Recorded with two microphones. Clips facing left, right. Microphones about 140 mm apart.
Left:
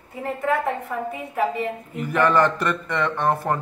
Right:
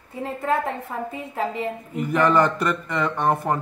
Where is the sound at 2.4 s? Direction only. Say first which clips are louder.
Even; 5° right (ahead or behind).